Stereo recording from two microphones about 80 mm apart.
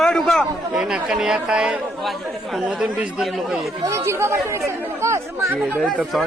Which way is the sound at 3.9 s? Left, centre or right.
Right.